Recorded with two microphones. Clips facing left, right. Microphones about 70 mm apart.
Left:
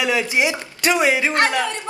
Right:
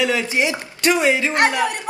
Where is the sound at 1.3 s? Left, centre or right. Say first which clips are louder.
Right 1 dB; right.